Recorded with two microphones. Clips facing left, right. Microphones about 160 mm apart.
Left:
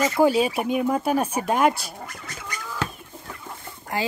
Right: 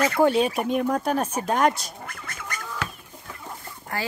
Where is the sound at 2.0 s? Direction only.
55° right (ahead or behind).